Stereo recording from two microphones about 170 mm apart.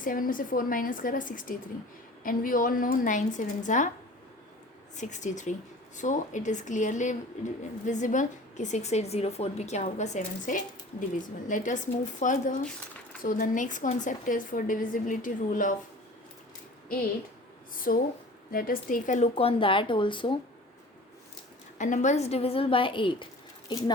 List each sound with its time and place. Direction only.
0.0 s speech: 55° left (ahead or behind)
4.9 s speech: 45° left (ahead or behind)
17.7 s speech: 55° left (ahead or behind)
19.4 s speech: 30° left (ahead or behind)
21.8 s a woman's voice: 45° left (ahead or behind); by 23.8 s 25° left (ahead or behind)